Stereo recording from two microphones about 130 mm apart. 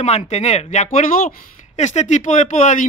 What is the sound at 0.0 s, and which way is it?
Speech, 55° left (ahead or behind).